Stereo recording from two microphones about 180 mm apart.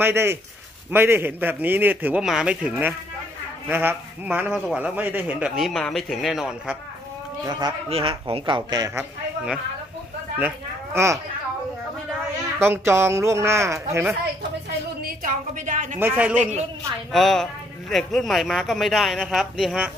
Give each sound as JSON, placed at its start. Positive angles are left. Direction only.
{"t": 0.0, "sound": "a man's voice", "side_deg": -15}
{"t": 4.5, "sound": "speech", "side_deg": 5}
{"t": 4.7, "sound": "speech", "side_deg": -10}
{"t": 7.9, "sound": "speech", "side_deg": -30}
{"t": 10.4, "sound": "speech", "side_deg": -15}
{"t": 12.5, "sound": "a man's voice", "side_deg": -15}
{"t": 15.0, "sound": "a sound", "side_deg": -50}
{"t": 16.0, "sound": "a man's voice", "side_deg": -10}